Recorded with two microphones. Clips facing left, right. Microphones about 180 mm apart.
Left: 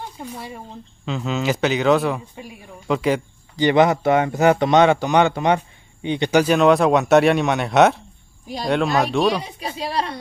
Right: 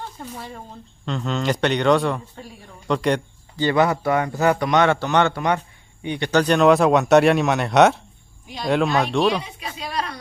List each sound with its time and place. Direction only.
0.0 s speech: 10° left (ahead or behind)
3.5 s a man's voice: 20° left (ahead or behind)
6.4 s speech: centre (ahead or behind)
9.4 s speech: 35° left (ahead or behind)